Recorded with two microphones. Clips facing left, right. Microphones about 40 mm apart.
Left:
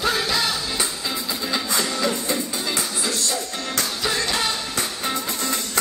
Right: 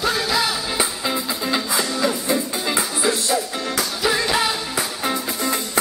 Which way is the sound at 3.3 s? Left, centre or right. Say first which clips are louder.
Right 5 dB; centre.